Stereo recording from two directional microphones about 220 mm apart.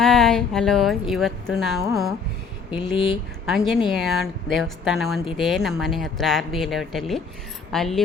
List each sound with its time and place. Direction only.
0.0 s a woman's voice: centre (ahead or behind)
2.7 s speech: 20° left (ahead or behind)
3.4 s a woman's voice: centre (ahead or behind)